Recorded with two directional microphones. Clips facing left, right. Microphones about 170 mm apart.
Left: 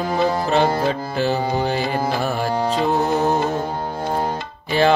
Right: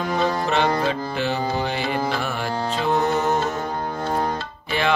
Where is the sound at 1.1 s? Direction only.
40° left (ahead or behind).